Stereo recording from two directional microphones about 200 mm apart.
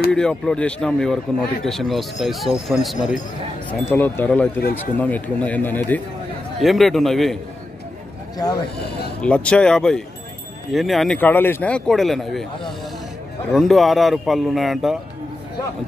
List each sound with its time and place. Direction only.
0.1 s speech: 5° left (ahead or behind)
3.9 s speech: 10° left (ahead or behind)
8.4 s speech: 20° left (ahead or behind)
9.2 s speech: 5° left (ahead or behind)
13.5 s speech: centre (ahead or behind)